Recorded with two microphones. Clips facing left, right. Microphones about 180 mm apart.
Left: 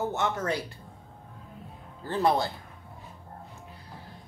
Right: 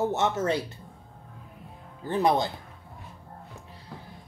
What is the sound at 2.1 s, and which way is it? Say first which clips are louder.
Speech: right 1 dB; 20° right (ahead or behind).